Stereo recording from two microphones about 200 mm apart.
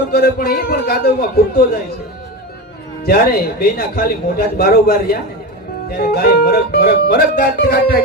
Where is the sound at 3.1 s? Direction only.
50° left (ahead or behind).